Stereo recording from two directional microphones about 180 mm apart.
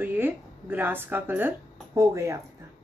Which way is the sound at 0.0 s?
10° right (ahead or behind).